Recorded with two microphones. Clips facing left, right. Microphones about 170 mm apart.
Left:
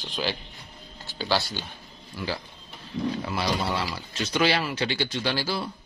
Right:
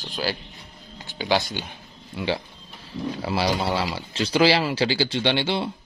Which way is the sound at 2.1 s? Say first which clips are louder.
Right 6 dB; 25° right (ahead or behind).